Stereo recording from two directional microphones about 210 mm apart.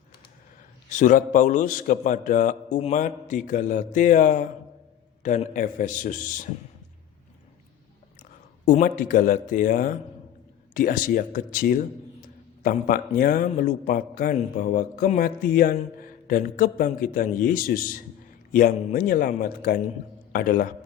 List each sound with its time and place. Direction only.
0.9 s a man's voice: 35° left (ahead or behind)
8.6 s a man's voice: 40° left (ahead or behind)